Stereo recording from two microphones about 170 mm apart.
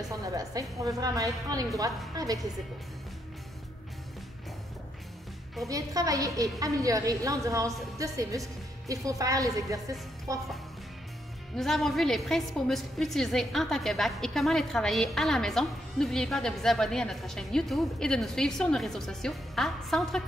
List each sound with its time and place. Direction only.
0.1 s a woman's voice: 20° right (ahead or behind)
5.7 s a woman's voice: 20° right (ahead or behind)
11.5 s a woman's voice: centre (ahead or behind)